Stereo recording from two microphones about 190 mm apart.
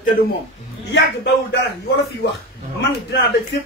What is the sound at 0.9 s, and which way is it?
Speech, 60° left (ahead or behind).